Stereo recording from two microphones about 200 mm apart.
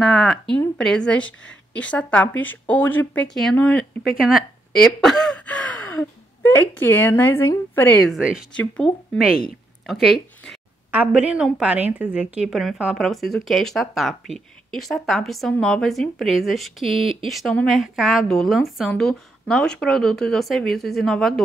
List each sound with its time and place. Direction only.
0.0 s speech: centre (ahead or behind)
5.0 s gasp: 5° left (ahead or behind)
6.8 s speech: 10° left (ahead or behind)
8.1 s speech: 5° right (ahead or behind)
17.0 s speech: 30° right (ahead or behind)
17.3 s speech: centre (ahead or behind)